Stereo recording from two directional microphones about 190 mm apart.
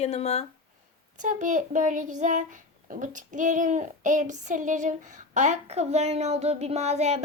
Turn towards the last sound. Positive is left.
turn(degrees=-35)  # may be behind; listen again after turning